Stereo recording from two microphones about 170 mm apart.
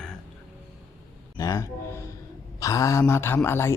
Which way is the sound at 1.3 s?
20° left (ahead or behind).